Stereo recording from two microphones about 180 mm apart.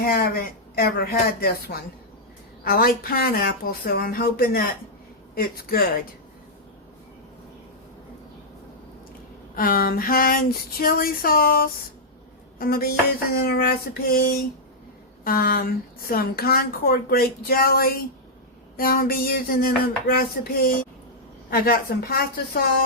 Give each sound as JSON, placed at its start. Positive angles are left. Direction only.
{"t": 0.0, "sound": "speech", "side_deg": 55}
{"t": 9.6, "sound": "a sound", "side_deg": 55}
{"t": 13.4, "sound": "speech", "side_deg": 55}